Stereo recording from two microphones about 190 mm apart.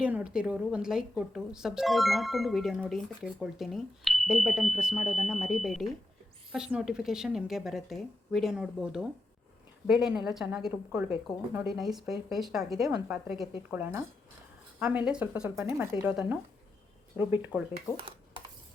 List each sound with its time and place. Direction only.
0.0 s speech: 5° right (ahead or behind)
17.9 s dishes: 25° right (ahead or behind)